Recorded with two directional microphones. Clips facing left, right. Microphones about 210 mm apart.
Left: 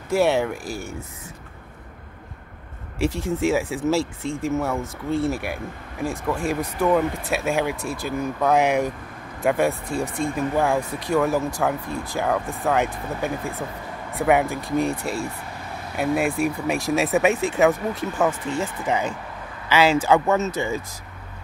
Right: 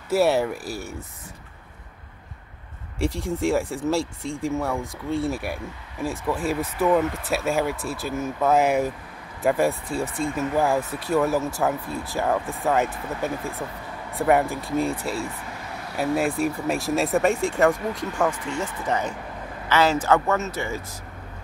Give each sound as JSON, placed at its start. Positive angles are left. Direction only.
{"t": 0.1, "sound": "speech", "side_deg": -5}
{"t": 3.0, "sound": "speech", "side_deg": 0}
{"t": 16.0, "sound": "speech", "side_deg": 0}